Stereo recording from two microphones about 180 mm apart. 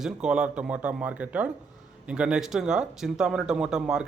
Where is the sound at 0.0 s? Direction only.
5° right (ahead or behind).